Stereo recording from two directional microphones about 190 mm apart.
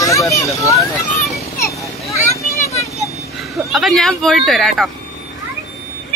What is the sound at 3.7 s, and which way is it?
Speech, centre (ahead or behind).